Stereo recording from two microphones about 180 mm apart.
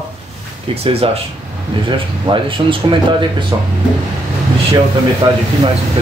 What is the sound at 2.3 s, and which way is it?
Speech, 30° right (ahead or behind).